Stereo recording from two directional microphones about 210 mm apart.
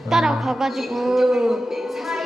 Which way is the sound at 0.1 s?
Centre (ahead or behind).